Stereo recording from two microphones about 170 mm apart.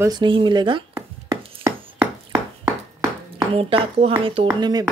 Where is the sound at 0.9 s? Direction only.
15° right (ahead or behind).